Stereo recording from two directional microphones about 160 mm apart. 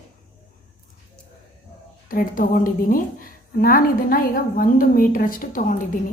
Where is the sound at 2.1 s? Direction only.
60° left (ahead or behind).